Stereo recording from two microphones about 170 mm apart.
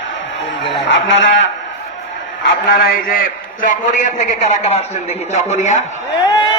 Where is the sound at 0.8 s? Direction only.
90° left.